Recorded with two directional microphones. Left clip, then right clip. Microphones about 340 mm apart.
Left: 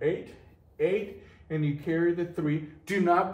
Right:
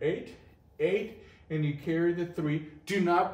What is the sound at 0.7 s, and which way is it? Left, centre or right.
A man's voice, centre.